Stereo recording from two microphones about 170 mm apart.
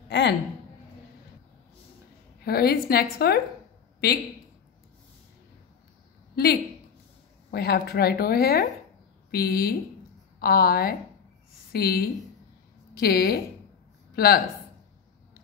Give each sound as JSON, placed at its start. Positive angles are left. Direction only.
{"t": 0.1, "sound": "a sound", "side_deg": 90}
{"t": 2.4, "sound": "a woman's voice", "side_deg": 65}
{"t": 6.3, "sound": "a woman's voice", "side_deg": 65}